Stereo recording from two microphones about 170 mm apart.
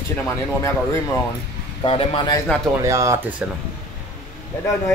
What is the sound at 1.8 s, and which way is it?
Speech, 35° left (ahead or behind).